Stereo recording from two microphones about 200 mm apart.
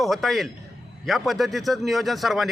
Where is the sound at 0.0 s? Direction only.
Centre (ahead or behind).